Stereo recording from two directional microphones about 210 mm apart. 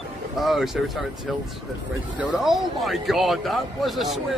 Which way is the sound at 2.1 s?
Centre (ahead or behind).